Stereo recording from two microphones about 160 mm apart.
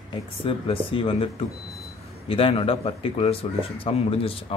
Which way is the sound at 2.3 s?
35° left (ahead or behind).